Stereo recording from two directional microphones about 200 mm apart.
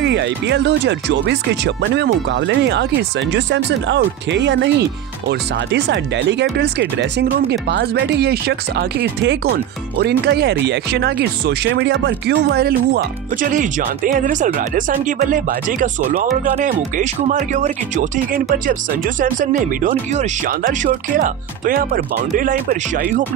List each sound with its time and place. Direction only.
0.0 s speech: 60° right (ahead or behind); by 23.2 s 40° right (ahead or behind)